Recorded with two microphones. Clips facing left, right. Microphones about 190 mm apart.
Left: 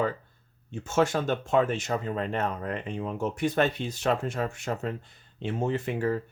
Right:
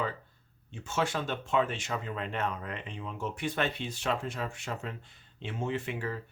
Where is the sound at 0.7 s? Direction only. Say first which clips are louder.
Left 7 dB; 45° left (ahead or behind).